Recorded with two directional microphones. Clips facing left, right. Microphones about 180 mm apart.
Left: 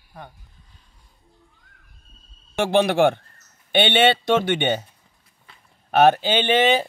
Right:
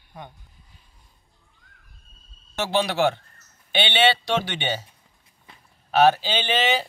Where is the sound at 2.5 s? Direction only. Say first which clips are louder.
Left 5 dB; 55° left (ahead or behind).